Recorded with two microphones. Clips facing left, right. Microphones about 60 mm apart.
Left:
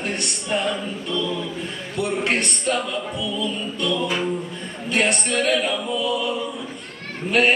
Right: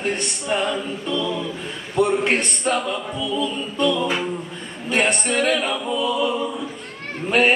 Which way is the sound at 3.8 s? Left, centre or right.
Centre.